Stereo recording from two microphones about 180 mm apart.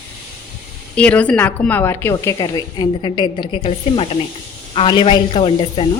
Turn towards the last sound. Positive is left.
turn(degrees=30)  # may be behind; listen again after turning